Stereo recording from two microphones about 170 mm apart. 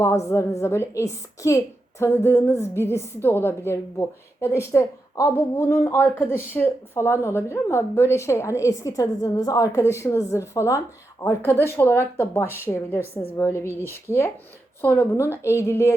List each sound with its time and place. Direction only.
0.0 s a woman's voice: 15° left (ahead or behind)
14.8 s a woman's voice: 10° left (ahead or behind)